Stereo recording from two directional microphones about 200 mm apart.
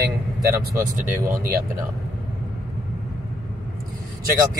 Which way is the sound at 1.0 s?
40° right (ahead or behind).